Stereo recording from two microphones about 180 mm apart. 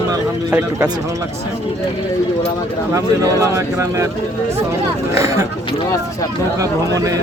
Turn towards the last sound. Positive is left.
turn(degrees=-20)  # may be behind; listen again after turning